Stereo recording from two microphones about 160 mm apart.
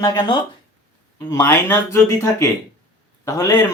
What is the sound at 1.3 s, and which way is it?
Speech, 15° left (ahead or behind).